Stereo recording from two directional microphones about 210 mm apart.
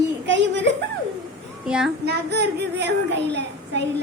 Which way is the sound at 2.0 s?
55° right (ahead or behind).